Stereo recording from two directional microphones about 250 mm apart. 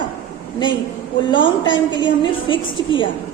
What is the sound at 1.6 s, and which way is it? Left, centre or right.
A woman's voice, centre.